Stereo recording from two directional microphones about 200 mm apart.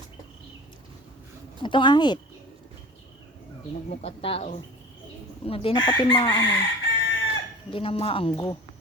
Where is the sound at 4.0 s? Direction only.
30° left (ahead or behind).